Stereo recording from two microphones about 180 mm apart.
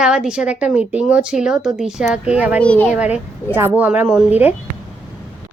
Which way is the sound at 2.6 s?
5° left (ahead or behind).